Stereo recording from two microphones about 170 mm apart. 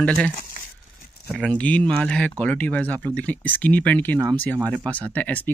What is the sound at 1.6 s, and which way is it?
Speech, 5° left (ahead or behind).